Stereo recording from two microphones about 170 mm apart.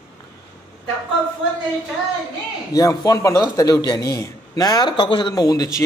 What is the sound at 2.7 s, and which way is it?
A man's voice, 20° left (ahead or behind).